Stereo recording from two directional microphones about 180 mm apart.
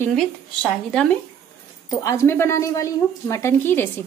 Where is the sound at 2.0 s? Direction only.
15° left (ahead or behind).